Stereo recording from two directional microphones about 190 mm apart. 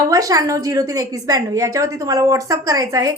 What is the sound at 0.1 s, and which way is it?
A woman's voice, 20° right (ahead or behind).